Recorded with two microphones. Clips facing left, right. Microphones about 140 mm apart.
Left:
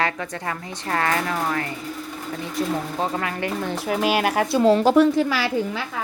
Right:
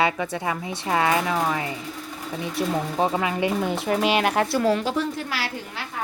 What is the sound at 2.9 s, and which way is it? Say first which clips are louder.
Speech: right 3 dB; 15° right (ahead or behind).